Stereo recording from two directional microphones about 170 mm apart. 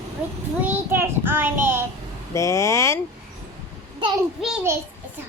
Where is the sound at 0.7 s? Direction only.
15° right (ahead or behind).